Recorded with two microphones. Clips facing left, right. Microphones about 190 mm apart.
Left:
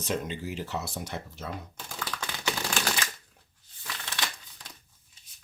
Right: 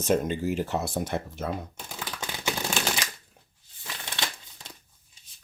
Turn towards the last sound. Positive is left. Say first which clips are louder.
# right 1 dB
turn(degrees=-25)  # may be behind; listen again after turning